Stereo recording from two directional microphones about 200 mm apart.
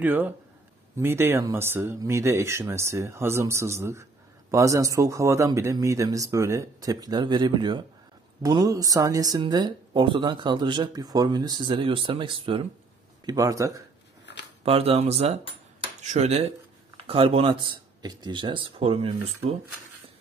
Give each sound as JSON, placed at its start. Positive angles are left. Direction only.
{"t": 0.0, "sound": "speech", "side_deg": -10}
{"t": 14.6, "sound": "speech", "side_deg": -30}